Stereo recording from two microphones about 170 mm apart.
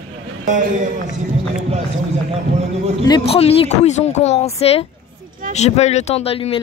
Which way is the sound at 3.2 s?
35° left (ahead or behind).